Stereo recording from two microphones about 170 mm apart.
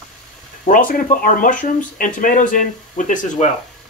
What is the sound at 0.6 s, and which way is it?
Speech, 55° left (ahead or behind).